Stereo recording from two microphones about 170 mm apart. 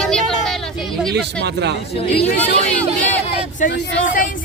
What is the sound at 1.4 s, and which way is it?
Speech, 80° right.